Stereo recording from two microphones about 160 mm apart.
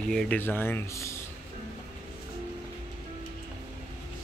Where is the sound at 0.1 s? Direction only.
5° left (ahead or behind).